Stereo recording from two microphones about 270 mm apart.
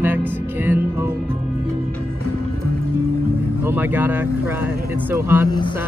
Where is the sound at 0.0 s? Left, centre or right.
Centre.